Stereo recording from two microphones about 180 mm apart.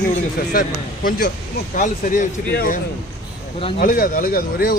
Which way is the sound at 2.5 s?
60° left (ahead or behind).